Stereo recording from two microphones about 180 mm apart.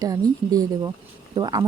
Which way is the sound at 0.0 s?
20° right (ahead or behind).